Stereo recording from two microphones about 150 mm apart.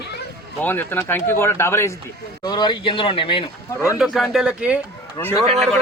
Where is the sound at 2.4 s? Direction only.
30° left (ahead or behind).